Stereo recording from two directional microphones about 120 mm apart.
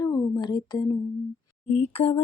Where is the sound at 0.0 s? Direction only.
35° left (ahead or behind).